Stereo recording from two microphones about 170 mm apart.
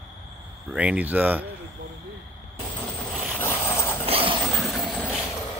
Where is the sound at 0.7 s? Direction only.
5° right (ahead or behind).